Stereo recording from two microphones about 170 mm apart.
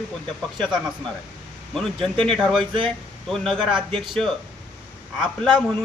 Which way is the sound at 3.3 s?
Centre (ahead or behind).